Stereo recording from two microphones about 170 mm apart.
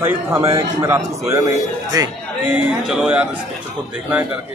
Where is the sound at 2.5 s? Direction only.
5° right (ahead or behind).